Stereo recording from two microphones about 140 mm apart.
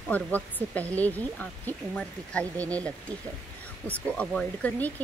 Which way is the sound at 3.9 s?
10° left (ahead or behind).